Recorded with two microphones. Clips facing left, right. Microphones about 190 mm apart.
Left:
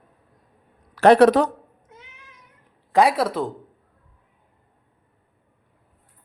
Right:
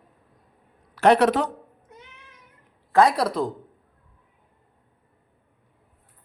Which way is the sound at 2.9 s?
15° left (ahead or behind).